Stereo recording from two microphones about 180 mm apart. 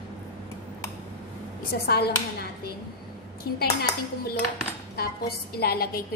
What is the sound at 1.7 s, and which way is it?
Speech, 60° left (ahead or behind).